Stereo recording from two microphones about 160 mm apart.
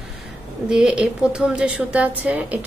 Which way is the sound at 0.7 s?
5° right (ahead or behind).